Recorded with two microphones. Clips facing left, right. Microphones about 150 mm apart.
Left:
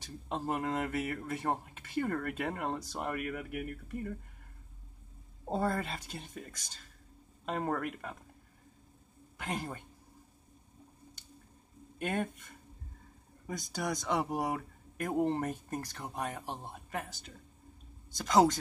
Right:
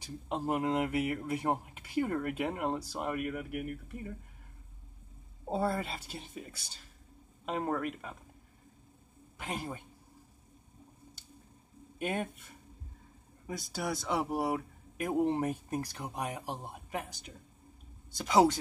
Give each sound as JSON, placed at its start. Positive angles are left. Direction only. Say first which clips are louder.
{"t": 0.0, "sound": "speech", "louder": "right 2 dB", "side_deg": -10}
{"t": 5.5, "sound": "speech", "louder": "even", "side_deg": -10}
{"t": 9.4, "sound": "speech", "louder": "even", "side_deg": -5}
{"t": 12.0, "sound": "speech", "louder": "even", "side_deg": -10}